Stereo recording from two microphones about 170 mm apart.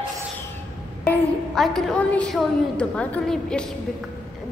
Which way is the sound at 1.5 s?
Centre (ahead or behind).